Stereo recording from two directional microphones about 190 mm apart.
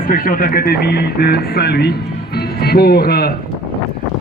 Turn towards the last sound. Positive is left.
turn(degrees=55)  # may be behind; listen again after turning